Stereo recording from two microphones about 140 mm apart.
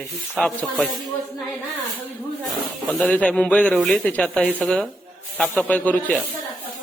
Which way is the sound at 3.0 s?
10° left (ahead or behind).